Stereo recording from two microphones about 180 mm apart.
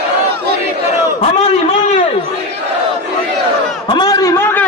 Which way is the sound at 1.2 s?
40° left (ahead or behind).